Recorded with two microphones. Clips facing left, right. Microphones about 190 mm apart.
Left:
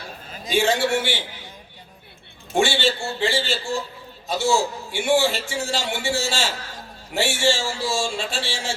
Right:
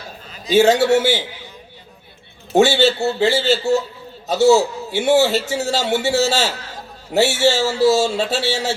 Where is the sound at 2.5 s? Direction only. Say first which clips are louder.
Right 7 dB; 40° right (ahead or behind).